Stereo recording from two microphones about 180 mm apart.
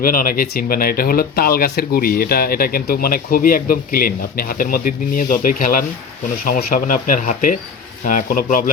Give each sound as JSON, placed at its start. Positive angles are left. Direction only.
{"t": 0.0, "sound": "speech", "side_deg": 50}